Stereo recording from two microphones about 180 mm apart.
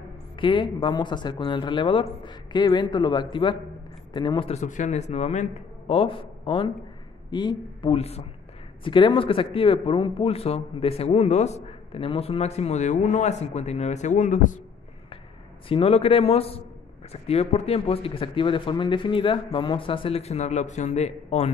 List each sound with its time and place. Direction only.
0.4 s a man's voice: 25° left (ahead or behind); by 14.6 s 45° left (ahead or behind)
15.7 s a man's voice: 30° left (ahead or behind)